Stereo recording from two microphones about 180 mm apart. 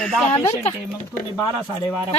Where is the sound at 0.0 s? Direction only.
Centre (ahead or behind).